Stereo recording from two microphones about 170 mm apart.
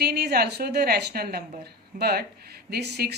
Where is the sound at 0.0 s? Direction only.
70° right (ahead or behind).